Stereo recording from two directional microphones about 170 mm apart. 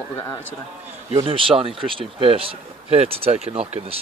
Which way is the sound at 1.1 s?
30° right (ahead or behind).